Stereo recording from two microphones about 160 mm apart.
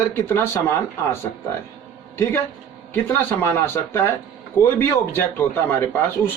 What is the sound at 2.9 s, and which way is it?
Speech, 10° left (ahead or behind).